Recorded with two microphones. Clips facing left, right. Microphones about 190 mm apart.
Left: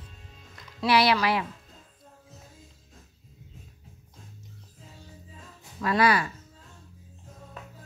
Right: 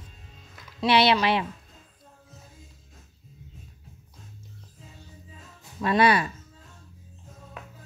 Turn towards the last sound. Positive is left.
turn(degrees=-25)  # may be behind; listen again after turning